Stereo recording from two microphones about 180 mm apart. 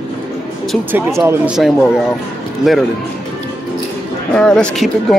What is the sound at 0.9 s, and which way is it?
Speech, 15° right (ahead or behind).